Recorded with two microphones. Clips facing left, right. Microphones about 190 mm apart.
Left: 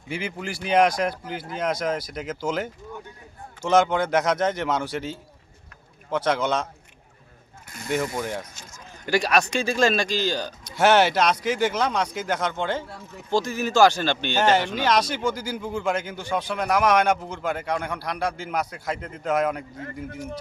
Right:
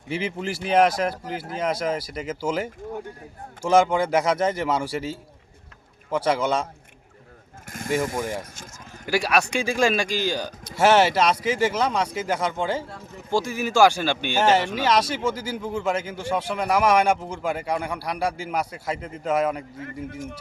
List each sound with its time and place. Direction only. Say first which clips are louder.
0.4 s a man's voice: even; 5° right (ahead or behind)
7.7 s speech: right 1 dB; 50° right (ahead or behind)
8.2 s a man's voice: right 1 dB; 5° right (ahead or behind)